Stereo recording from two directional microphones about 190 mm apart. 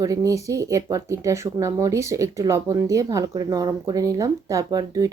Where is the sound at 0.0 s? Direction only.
20° right (ahead or behind).